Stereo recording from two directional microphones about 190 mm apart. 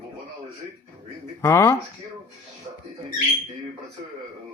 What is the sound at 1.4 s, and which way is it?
Speech, 15° left (ahead or behind).